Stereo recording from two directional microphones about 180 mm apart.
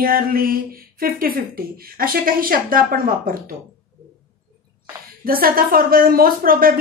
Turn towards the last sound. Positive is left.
turn(degrees=-55)  # may be behind; listen again after turning